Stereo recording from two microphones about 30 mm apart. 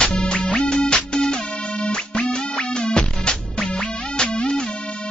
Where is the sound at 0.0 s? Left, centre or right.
Left.